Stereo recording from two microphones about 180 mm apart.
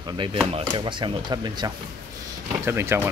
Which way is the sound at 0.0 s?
25° right (ahead or behind).